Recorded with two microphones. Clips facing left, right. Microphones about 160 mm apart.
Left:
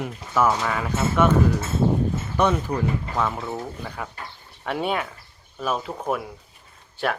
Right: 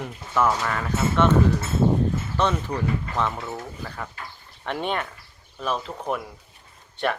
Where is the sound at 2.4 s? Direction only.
10° left (ahead or behind).